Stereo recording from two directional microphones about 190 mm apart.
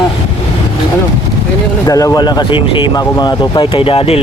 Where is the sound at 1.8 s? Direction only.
20° left (ahead or behind).